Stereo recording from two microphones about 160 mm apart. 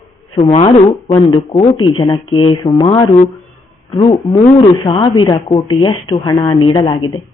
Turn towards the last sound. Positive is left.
turn(degrees=30)  # may be behind; listen again after turning